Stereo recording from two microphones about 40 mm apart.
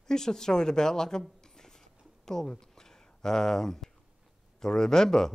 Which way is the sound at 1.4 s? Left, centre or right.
Centre.